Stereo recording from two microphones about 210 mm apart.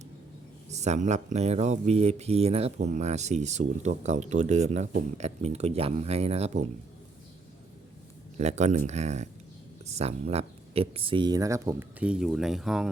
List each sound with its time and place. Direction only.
0.7 s speech: 35° right (ahead or behind)
8.4 s speech: 35° right (ahead or behind); by 12.9 s centre (ahead or behind)